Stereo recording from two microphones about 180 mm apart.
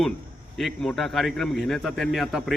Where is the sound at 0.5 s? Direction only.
Centre (ahead or behind).